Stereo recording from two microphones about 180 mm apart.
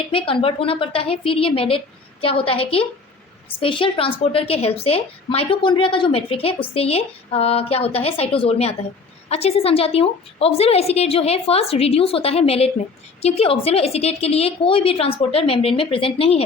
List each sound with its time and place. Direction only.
0.1 s a woman's voice: 30° left (ahead or behind)